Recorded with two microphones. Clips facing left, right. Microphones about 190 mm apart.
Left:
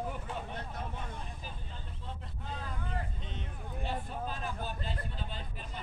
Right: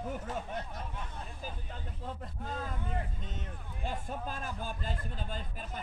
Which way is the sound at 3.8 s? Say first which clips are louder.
Even; 45° right (ahead or behind).